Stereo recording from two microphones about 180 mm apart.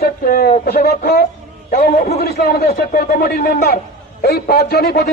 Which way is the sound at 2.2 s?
60° left (ahead or behind).